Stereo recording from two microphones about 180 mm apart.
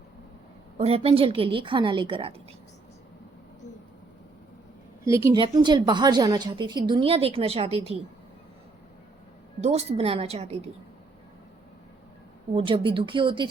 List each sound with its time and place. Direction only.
0.8 s a woman's voice: 35° right (ahead or behind)
5.0 s a woman's voice: 15° right (ahead or behind); by 7.9 s 35° right (ahead or behind)
9.6 s a woman's voice: 35° right (ahead or behind)
12.5 s a woman's voice: 30° right (ahead or behind)